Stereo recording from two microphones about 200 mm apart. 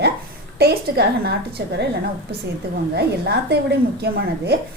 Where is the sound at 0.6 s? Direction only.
50° right (ahead or behind).